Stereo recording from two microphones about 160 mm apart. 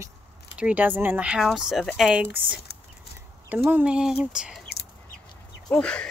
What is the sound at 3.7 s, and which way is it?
Speech, 10° right (ahead or behind).